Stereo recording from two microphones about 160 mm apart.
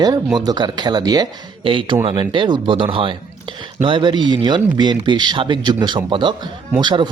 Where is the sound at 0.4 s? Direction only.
25° right (ahead or behind).